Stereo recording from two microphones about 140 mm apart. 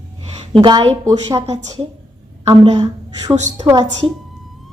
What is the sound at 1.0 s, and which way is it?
A woman's voice, 25° right (ahead or behind).